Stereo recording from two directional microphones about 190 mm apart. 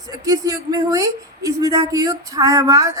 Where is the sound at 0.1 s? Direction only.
20° right (ahead or behind).